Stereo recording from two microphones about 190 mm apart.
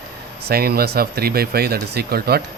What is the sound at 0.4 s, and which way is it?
Speech, 55° right (ahead or behind).